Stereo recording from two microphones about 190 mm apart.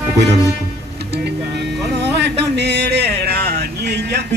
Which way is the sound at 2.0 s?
60° right (ahead or behind).